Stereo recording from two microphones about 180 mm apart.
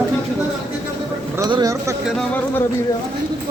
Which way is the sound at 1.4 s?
20° right (ahead or behind).